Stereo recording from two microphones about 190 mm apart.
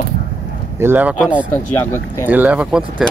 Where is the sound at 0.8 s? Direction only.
10° right (ahead or behind).